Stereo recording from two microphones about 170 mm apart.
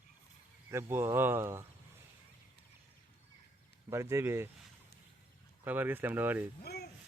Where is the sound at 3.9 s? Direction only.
15° right (ahead or behind).